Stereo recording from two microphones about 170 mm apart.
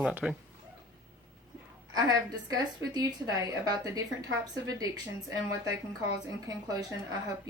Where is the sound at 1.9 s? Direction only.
25° right (ahead or behind).